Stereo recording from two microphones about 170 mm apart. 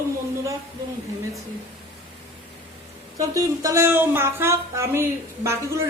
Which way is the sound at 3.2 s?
20° right (ahead or behind).